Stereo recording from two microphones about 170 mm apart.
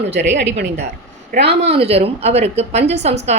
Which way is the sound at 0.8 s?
90° right.